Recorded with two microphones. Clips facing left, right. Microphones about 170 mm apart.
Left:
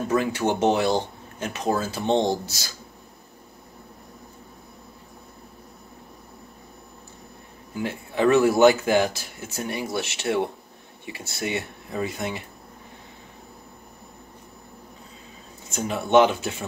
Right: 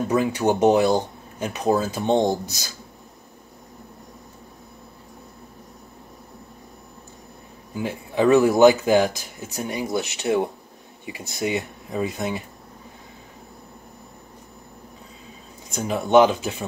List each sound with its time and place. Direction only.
0.1 s speech: 15° right (ahead or behind)
7.7 s speech: 15° right (ahead or behind)
15.7 s speech: 15° right (ahead or behind)